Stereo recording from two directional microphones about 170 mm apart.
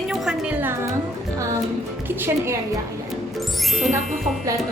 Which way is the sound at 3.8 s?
Centre (ahead or behind).